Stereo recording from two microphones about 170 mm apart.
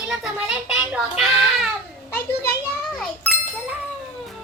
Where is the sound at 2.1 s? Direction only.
15° left (ahead or behind).